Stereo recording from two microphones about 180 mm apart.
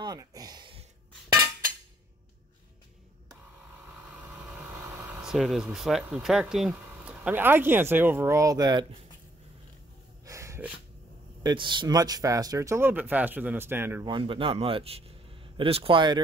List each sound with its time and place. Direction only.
0.0 s a sound: 20° right (ahead or behind)
4.4 s vehicle: 10° right (ahead or behind)
6.7 s speech: 10° right (ahead or behind)
10.2 s snort: 15° right (ahead or behind)
11.4 s speech: 25° right (ahead or behind)
14.0 s a man's voice: 25° right (ahead or behind)